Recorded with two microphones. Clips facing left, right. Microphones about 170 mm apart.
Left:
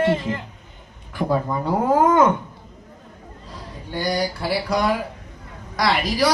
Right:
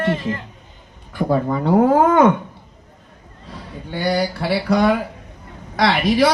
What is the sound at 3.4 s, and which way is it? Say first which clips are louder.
Speech: right 4 dB; 65° right (ahead or behind).